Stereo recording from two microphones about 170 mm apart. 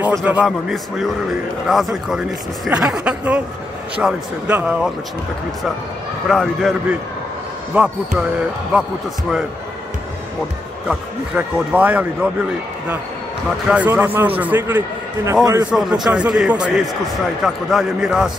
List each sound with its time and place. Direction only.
0.0 s speech: 10° right (ahead or behind)
6.2 s speech: centre (ahead or behind)
10.9 s speech: 10° right (ahead or behind)
13.7 s a man's voice: 10° right (ahead or behind)
15.7 s speech: centre (ahead or behind)